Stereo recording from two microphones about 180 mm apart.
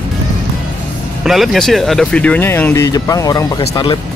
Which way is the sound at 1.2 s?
Centre (ahead or behind).